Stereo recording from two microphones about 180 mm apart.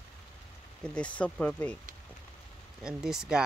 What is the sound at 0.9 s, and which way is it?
Speech, 5° left (ahead or behind).